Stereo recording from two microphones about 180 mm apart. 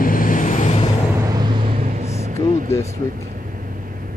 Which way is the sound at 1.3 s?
25° right (ahead or behind).